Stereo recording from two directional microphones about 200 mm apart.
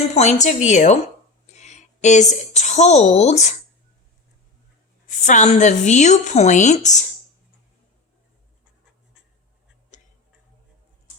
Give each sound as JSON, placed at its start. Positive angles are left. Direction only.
{"t": 0.1, "sound": "a woman's voice", "side_deg": 35}
{"t": 1.5, "sound": "a sound", "side_deg": 35}
{"t": 2.3, "sound": "a woman's voice", "side_deg": 35}
{"t": 5.0, "sound": "a woman's voice", "side_deg": 40}
{"t": 9.9, "sound": "tick-tock", "side_deg": 35}